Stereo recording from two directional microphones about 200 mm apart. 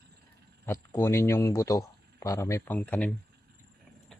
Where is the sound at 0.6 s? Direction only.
10° left (ahead or behind).